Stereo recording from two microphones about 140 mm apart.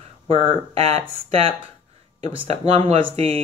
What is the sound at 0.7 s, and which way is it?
Speech, 45° right (ahead or behind).